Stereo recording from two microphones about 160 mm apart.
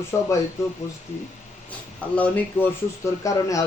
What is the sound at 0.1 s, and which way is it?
Speech, 15° left (ahead or behind).